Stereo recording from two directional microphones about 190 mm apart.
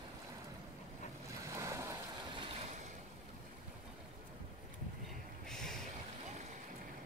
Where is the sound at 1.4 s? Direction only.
15° right (ahead or behind).